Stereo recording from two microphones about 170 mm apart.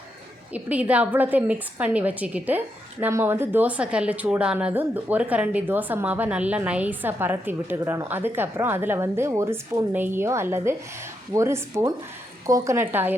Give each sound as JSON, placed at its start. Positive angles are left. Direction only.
{"t": 0.5, "sound": "a woman's voice", "side_deg": -10}